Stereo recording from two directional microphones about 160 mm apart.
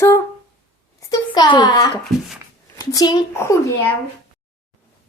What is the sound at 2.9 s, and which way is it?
Speech, 25° left (ahead or behind).